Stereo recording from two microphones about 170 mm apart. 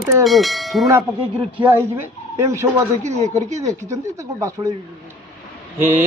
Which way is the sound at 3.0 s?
40° right (ahead or behind).